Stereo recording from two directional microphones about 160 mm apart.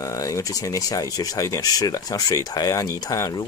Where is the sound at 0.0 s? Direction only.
20° left (ahead or behind).